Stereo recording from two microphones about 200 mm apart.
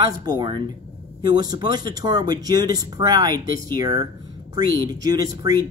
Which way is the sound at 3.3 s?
45° left (ahead or behind).